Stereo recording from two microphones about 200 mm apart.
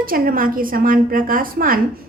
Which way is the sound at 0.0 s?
45° right (ahead or behind).